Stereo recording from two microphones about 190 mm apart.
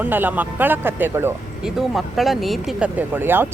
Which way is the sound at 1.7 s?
Centre (ahead or behind).